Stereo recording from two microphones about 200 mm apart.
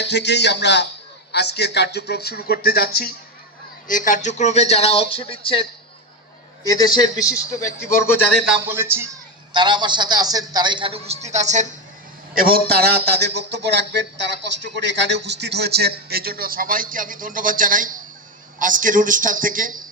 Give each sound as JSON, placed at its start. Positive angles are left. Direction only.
{"t": 0.0, "sound": "speech", "side_deg": 60}
{"t": 6.7, "sound": "a man's voice", "side_deg": 20}
{"t": 8.4, "sound": "speech", "side_deg": -5}
{"t": 9.5, "sound": "a man's voice", "side_deg": -20}
{"t": 12.3, "sound": "a man's voice", "side_deg": -45}